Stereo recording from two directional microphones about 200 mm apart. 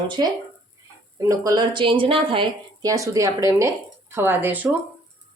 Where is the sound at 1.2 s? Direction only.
15° right (ahead or behind).